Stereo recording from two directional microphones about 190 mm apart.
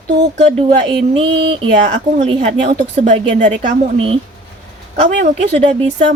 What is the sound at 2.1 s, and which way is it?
Speech, 35° right (ahead or behind).